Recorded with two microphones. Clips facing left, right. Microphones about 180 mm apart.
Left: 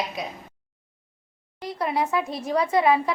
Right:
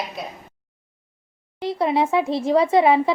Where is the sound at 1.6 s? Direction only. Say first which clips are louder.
Right 6 dB; 25° right (ahead or behind).